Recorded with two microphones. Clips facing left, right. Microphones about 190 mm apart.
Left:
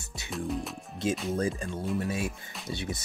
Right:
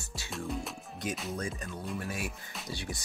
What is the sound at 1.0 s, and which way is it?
Speech, 25° left (ahead or behind).